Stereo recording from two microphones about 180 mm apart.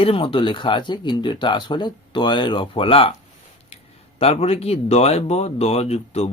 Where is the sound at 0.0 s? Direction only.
30° left (ahead or behind).